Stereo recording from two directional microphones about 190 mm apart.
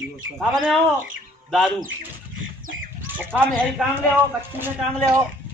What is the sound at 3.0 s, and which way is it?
Speech, 10° right (ahead or behind).